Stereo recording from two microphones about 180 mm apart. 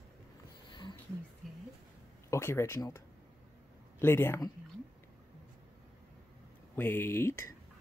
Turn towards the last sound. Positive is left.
turn(degrees=15)  # may be behind; listen again after turning